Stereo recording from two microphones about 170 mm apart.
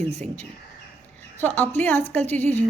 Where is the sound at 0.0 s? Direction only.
40° right (ahead or behind).